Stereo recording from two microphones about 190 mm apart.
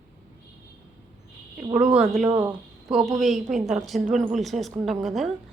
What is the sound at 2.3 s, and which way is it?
Speech, 20° right (ahead or behind).